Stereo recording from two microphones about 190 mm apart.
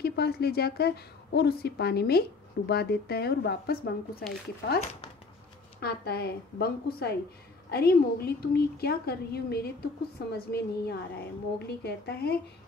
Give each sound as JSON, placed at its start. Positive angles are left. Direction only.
{"t": 0.0, "sound": "a woman's voice", "side_deg": 55}
{"t": 5.8, "sound": "a woman's voice", "side_deg": 55}